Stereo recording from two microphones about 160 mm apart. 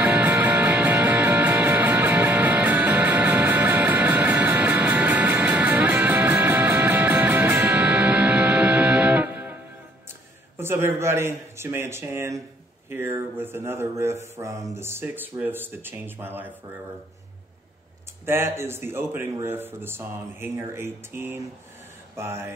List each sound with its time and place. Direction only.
0.0 s music: 10° right (ahead or behind)
10.6 s speech: 15° right (ahead or behind)
18.2 s speech: 15° right (ahead or behind)